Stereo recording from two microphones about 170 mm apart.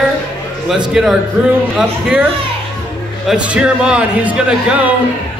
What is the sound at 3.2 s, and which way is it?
A man's voice, 5° right (ahead or behind).